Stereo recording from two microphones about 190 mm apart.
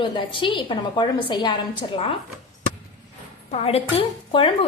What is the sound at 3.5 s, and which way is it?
Speech, 30° left (ahead or behind).